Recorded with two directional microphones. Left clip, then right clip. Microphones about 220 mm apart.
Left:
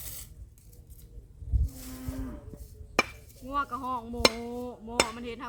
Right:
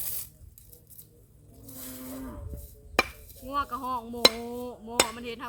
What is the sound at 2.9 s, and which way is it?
Chop, 5° right (ahead or behind).